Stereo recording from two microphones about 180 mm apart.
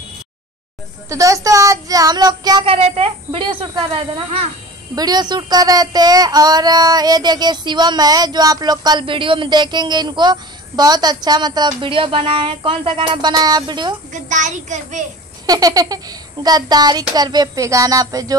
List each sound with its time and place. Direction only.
1.0 s child singing: 15° right (ahead or behind); by 4.5 s 35° right (ahead or behind)
4.9 s speech: 20° right (ahead or behind)
14.3 s a child's voice: 45° right (ahead or behind)
15.4 s speech: 20° right (ahead or behind)